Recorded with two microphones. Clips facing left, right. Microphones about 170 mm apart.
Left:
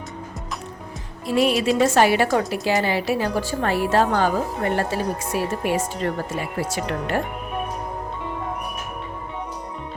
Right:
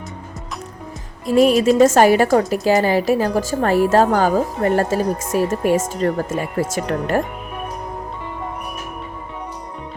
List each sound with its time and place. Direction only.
1.3 s a woman's voice: 40° right (ahead or behind)